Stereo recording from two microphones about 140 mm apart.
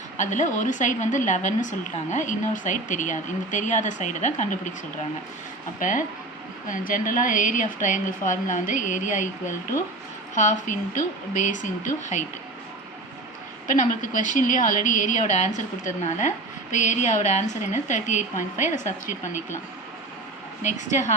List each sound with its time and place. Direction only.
0.2 s a woman's voice: 60° left (ahead or behind)
5.8 s a woman's voice: 70° left (ahead or behind)
10.3 s a woman's voice: 60° left (ahead or behind)
13.7 s a woman's voice: 65° left (ahead or behind)
20.6 s a woman's voice: 60° left (ahead or behind)